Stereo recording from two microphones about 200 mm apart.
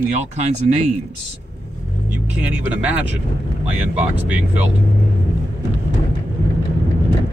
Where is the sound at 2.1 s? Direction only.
5° right (ahead or behind).